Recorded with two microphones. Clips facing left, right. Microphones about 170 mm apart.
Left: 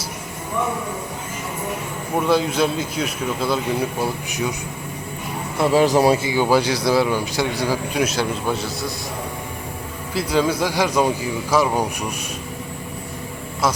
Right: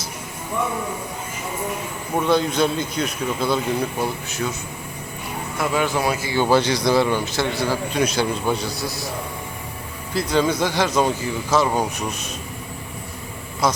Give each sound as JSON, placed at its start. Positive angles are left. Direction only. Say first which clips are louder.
{"t": 2.1, "sound": "speech", "louder": "even", "side_deg": 5}
{"t": 5.5, "sound": "speech", "louder": "left 6 dB", "side_deg": 35}
{"t": 6.2, "sound": "speech", "louder": "even", "side_deg": 10}
{"t": 10.2, "sound": "speech", "louder": "even", "side_deg": 5}